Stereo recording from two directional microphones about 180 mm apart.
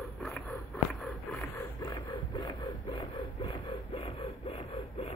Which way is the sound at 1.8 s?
25° left (ahead or behind).